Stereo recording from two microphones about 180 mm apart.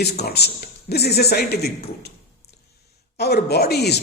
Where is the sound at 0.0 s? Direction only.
65° left (ahead or behind).